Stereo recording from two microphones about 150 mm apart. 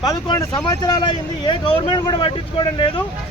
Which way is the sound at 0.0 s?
25° left (ahead or behind).